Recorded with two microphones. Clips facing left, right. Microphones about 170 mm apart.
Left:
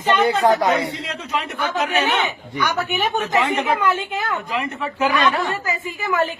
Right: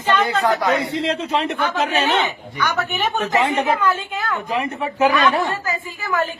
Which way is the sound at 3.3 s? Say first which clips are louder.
Right 2 dB; 20° right (ahead or behind).